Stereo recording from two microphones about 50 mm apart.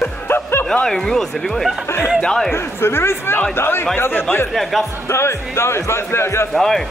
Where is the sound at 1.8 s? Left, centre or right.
Left.